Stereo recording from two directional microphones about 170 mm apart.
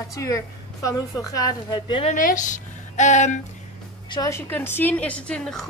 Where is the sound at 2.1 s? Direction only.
50° left (ahead or behind).